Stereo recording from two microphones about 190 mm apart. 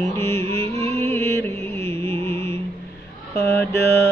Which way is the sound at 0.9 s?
15° left (ahead or behind).